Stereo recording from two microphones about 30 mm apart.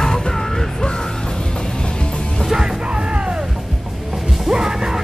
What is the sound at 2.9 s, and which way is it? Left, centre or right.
Music, right.